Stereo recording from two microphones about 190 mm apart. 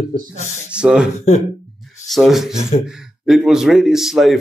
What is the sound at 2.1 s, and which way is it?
Speech, centre (ahead or behind).